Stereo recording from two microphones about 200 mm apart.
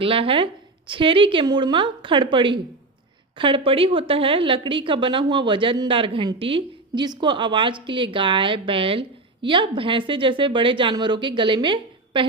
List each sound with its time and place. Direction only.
0.0 s a woman's voice: 25° right (ahead or behind)